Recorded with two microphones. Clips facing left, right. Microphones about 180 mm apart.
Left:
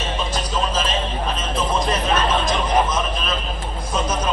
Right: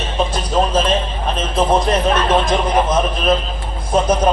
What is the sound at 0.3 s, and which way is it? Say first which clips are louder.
Music: right 6 dB; 60° right (ahead or behind).